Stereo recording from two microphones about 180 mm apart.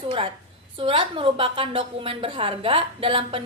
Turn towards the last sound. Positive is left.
turn(degrees=-30)  # may be behind; listen again after turning